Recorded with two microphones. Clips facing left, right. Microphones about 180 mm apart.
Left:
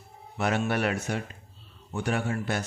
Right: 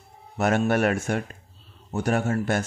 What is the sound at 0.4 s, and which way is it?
Speech, 45° right (ahead or behind).